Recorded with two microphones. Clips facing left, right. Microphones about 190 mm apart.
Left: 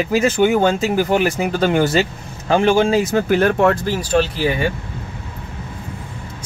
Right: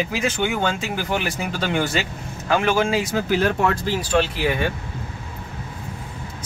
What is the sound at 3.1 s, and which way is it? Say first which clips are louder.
Speech: left 5 dB; 55° left (ahead or behind).